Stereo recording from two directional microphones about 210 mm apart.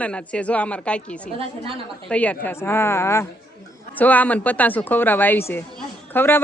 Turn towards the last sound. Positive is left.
turn(degrees=10)  # may be behind; listen again after turning